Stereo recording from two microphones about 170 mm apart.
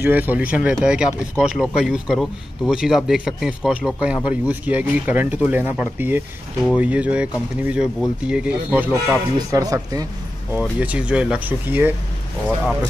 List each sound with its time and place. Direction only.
0.0 s speech: 10° right (ahead or behind)
9.5 s speech: 20° right (ahead or behind)
10.5 s speech: 10° right (ahead or behind)